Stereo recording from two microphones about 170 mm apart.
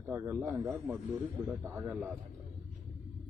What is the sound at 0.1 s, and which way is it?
Speech, 15° right (ahead or behind).